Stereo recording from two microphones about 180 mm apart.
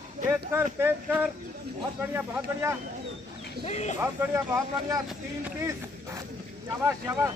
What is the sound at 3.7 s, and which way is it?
Speech, 40° left (ahead or behind).